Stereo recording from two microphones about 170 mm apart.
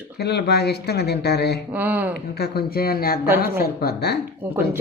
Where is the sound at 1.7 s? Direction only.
10° right (ahead or behind).